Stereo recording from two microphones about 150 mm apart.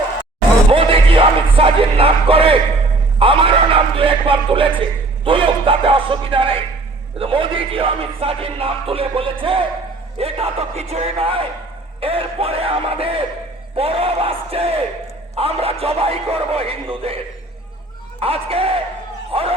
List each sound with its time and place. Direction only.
0.7 s speech: 35° right (ahead or behind)
18.2 s speech: 40° right (ahead or behind)